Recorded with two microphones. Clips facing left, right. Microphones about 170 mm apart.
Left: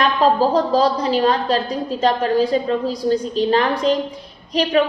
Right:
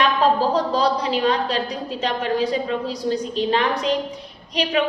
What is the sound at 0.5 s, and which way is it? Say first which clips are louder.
A woman's voice: left 3 dB; 40° left (ahead or behind).